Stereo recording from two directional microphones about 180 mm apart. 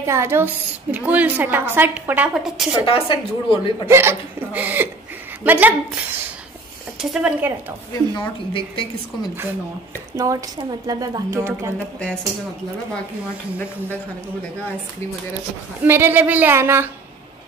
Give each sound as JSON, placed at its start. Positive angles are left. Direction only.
{"t": 0.0, "sound": "a woman's voice", "side_deg": -15}
{"t": 2.8, "sound": "a woman's voice", "side_deg": 30}
{"t": 3.8, "sound": "a woman's voice", "side_deg": -15}
{"t": 7.0, "sound": "speech", "side_deg": -5}
{"t": 7.9, "sound": "a woman's voice", "side_deg": 25}
{"t": 10.1, "sound": "a woman's voice", "side_deg": -20}
{"t": 15.8, "sound": "a woman's voice", "side_deg": -10}